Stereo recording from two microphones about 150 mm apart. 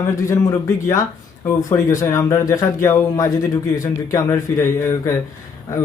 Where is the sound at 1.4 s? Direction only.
20° left (ahead or behind).